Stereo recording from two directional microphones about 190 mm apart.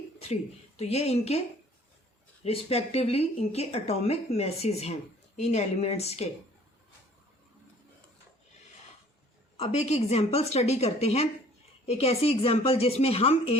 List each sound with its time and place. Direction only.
0.8 s a woman's voice: 35° left (ahead or behind)
2.4 s a woman's voice: 30° left (ahead or behind)
9.6 s a woman's voice: 35° left (ahead or behind)